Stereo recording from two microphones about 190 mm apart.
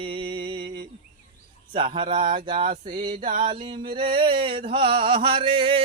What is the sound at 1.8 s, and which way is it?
Music, 25° right (ahead or behind).